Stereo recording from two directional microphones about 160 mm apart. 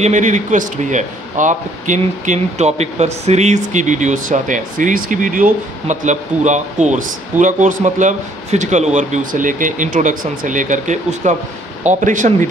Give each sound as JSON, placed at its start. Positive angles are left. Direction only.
{"t": 0.0, "sound": "speech", "side_deg": -50}